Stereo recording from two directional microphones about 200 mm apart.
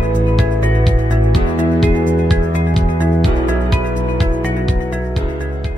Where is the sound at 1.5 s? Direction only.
40° left (ahead or behind).